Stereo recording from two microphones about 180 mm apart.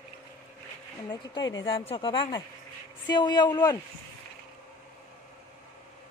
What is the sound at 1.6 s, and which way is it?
Speech, 30° left (ahead or behind).